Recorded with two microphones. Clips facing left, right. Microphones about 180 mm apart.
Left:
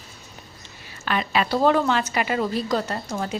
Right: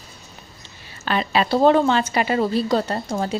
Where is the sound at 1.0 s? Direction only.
30° right (ahead or behind).